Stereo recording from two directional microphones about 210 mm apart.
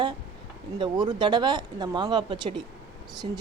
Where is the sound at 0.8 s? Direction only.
20° right (ahead or behind).